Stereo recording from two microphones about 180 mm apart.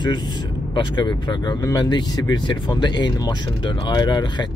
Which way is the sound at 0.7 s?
25° left (ahead or behind).